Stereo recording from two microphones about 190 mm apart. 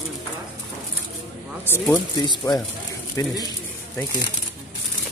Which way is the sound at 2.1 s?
25° left (ahead or behind).